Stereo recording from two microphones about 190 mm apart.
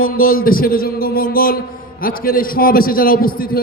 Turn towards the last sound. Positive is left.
turn(degrees=50)  # may be behind; listen again after turning